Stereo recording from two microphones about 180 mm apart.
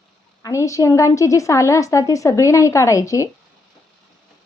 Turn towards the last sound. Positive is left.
turn(degrees=15)  # may be behind; listen again after turning